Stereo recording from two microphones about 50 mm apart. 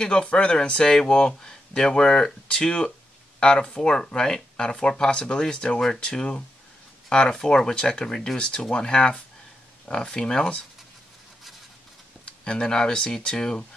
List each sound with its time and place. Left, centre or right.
0.0 s speech: left
12.3 s speech: centre